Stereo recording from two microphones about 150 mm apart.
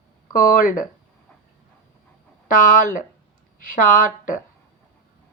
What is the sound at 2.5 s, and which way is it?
A woman's voice, 65° left (ahead or behind).